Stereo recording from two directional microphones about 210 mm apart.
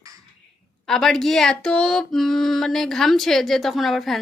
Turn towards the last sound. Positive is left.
turn(degrees=0)  # may be behind; listen again after turning